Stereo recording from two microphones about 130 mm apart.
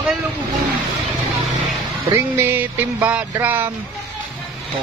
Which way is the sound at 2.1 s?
15° right (ahead or behind).